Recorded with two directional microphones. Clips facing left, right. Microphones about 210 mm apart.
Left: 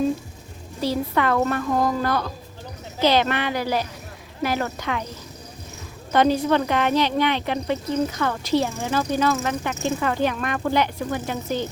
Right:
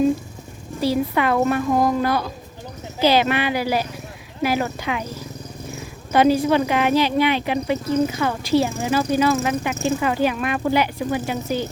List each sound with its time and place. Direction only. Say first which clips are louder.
0.8 s speech: right 3 dB; 10° right (ahead or behind)
6.1 s speech: right 3 dB; 10° right (ahead or behind)